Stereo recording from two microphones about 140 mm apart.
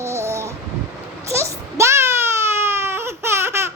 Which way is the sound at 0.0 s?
20° right (ahead or behind).